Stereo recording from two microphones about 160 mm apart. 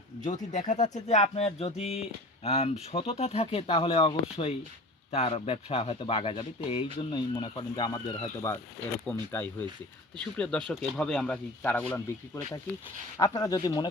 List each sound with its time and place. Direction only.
0.5 s speech: 50° left (ahead or behind); by 8.5 s 20° left (ahead or behind)
9.0 s speech: 10° left (ahead or behind)
13.1 s speech: 25° left (ahead or behind)